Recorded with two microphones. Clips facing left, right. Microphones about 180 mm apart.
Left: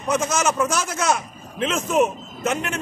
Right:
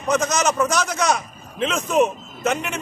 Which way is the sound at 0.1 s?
5° left (ahead or behind).